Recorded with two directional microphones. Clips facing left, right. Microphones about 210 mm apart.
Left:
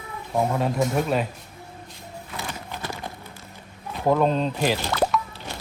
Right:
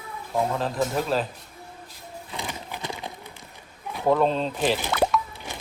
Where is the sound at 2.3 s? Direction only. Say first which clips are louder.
Even; 15° right (ahead or behind).